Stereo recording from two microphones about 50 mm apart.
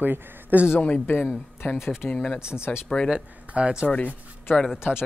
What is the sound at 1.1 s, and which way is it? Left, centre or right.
Speech, left.